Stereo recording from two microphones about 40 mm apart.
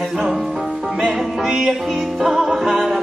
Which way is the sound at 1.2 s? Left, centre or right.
Centre.